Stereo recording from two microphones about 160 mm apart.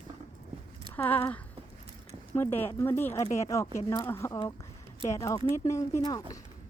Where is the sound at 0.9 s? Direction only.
10° left (ahead or behind).